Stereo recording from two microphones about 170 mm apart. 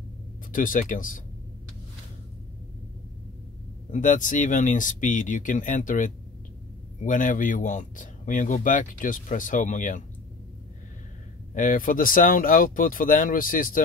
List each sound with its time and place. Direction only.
0.5 s speech: 55° left (ahead or behind)
3.9 s speech: 50° left (ahead or behind)
11.5 s speech: 50° left (ahead or behind)